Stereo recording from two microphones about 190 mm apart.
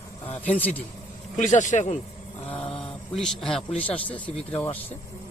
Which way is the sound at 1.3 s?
40° left (ahead or behind).